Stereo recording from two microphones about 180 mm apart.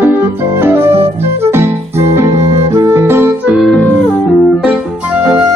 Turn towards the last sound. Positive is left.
turn(degrees=5)  # may be behind; listen again after turning